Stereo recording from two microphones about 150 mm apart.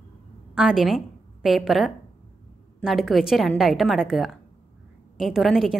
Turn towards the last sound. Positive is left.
turn(degrees=0)  # may be behind; listen again after turning